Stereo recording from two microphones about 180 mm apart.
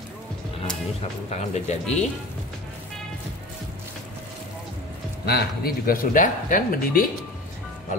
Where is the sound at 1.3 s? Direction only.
40° left (ahead or behind).